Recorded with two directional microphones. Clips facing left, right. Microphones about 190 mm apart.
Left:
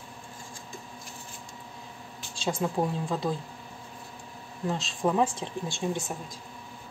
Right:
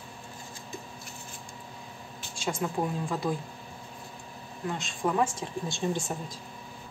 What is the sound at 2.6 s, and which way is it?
Speech, 25° left (ahead or behind).